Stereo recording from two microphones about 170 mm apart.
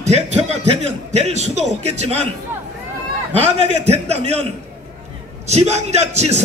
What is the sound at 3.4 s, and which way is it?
A man's voice, 40° right (ahead or behind).